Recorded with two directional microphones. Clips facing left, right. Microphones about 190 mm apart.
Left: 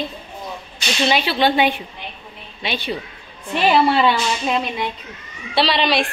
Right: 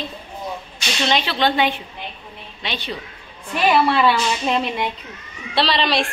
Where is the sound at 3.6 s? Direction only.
30° left (ahead or behind).